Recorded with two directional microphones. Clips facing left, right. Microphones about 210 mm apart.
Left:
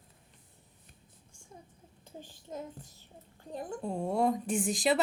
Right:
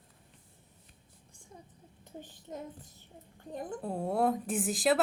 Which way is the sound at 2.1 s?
20° right (ahead or behind).